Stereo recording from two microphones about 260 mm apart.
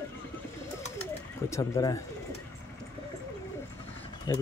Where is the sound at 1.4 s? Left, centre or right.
Centre.